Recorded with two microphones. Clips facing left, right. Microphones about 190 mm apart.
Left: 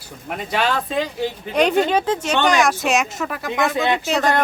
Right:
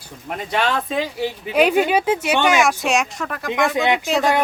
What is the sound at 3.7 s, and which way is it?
Speech, 15° right (ahead or behind).